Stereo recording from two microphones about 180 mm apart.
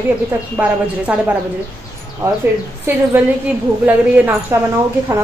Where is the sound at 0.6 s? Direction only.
10° right (ahead or behind).